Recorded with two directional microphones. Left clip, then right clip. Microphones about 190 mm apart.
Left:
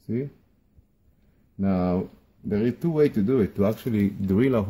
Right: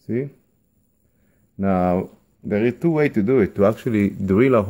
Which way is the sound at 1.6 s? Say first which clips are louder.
Right 6 dB; 25° right (ahead or behind).